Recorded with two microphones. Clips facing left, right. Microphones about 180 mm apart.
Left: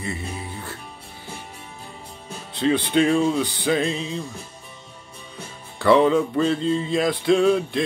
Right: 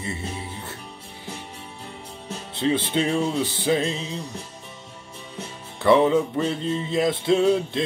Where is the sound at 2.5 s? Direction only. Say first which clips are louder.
Left 3 dB; 20° right (ahead or behind).